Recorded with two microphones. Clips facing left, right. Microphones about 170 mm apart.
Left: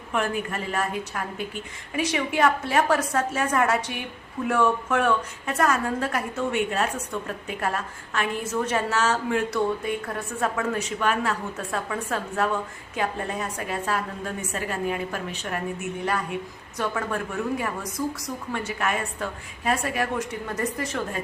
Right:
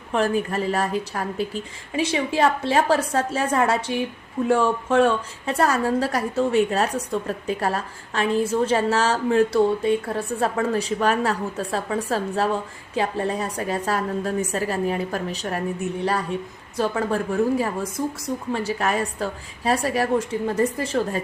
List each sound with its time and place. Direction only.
0.1 s a woman's voice: 35° right (ahead or behind)